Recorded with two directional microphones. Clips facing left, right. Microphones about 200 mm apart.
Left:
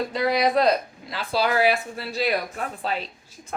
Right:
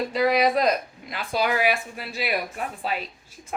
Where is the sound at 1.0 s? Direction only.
15° right (ahead or behind).